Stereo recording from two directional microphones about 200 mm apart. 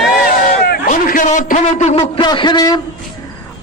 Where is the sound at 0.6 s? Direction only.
45° left (ahead or behind).